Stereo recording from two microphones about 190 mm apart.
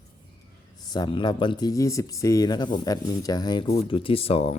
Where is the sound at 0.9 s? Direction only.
25° left (ahead or behind).